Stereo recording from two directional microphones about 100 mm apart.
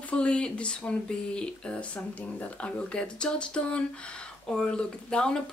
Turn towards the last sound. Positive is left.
turn(degrees=10)  # may be behind; listen again after turning